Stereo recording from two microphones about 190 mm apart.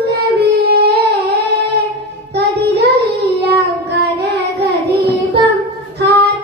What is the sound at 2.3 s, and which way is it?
Child singing, 60° right (ahead or behind).